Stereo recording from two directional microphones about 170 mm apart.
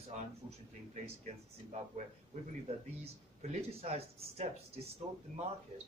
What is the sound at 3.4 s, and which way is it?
Speech, 40° right (ahead or behind).